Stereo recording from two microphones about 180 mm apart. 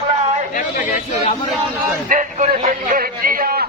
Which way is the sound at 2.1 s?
45° right (ahead or behind).